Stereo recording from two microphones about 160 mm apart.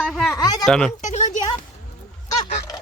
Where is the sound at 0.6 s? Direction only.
5° left (ahead or behind).